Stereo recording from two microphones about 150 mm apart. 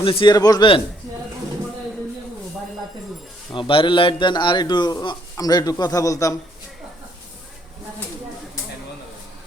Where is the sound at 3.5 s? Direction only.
35° left (ahead or behind).